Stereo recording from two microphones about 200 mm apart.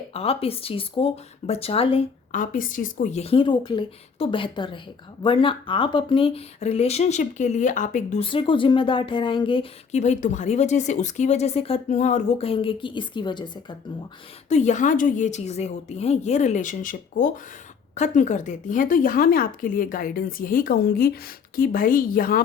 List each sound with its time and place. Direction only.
0.1 s speech: 30° left (ahead or behind)
2.3 s speech: 45° left (ahead or behind); by 13.7 s 20° left (ahead or behind)
14.5 s a woman's voice: 35° left (ahead or behind)